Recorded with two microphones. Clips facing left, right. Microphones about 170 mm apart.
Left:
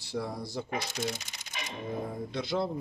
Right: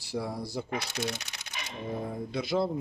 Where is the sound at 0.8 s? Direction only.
70° right (ahead or behind).